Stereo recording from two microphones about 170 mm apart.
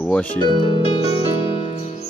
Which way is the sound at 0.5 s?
30° left (ahead or behind).